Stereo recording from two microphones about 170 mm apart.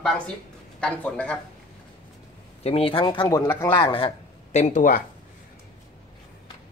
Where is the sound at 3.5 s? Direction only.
10° left (ahead or behind).